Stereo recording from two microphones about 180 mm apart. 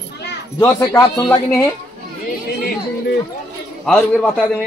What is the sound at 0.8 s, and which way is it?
Speech, 15° left (ahead or behind).